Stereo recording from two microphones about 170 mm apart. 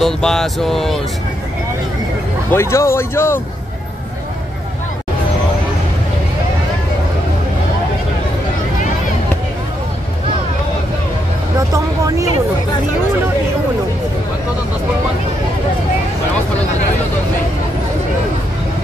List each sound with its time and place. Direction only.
0.0 s speech: 5° left (ahead or behind)
2.5 s speech: 15° left (ahead or behind)